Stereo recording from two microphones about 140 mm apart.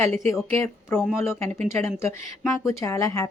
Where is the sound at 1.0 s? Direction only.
5° right (ahead or behind).